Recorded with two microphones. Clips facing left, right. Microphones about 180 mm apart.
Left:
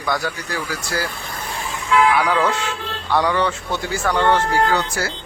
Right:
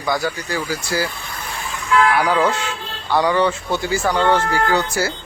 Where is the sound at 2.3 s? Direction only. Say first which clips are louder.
Right 1 dB; 5° right (ahead or behind).